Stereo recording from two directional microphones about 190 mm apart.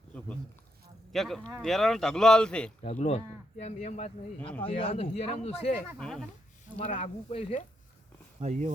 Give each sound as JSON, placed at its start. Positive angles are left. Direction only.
{"t": 1.1, "sound": "speech", "side_deg": 0}
{"t": 2.9, "sound": "speech", "side_deg": 40}
{"t": 4.4, "sound": "speech", "side_deg": 10}
{"t": 4.6, "sound": "speech", "side_deg": 30}
{"t": 6.0, "sound": "speech", "side_deg": 5}
{"t": 6.7, "sound": "speech", "side_deg": 30}
{"t": 8.4, "sound": "speech", "side_deg": -35}